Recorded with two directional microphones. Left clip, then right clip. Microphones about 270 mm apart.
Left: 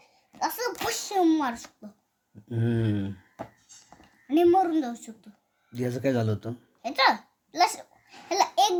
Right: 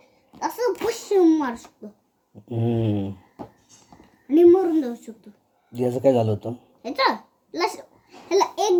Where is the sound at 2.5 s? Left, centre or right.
Left.